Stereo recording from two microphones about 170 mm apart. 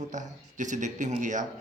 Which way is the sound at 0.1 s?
45° right (ahead or behind).